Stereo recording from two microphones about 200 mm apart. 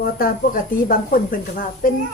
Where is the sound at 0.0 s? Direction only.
45° left (ahead or behind).